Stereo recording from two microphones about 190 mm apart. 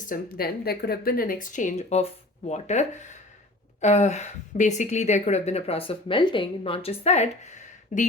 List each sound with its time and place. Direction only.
0.1 s speech: 55° left (ahead or behind)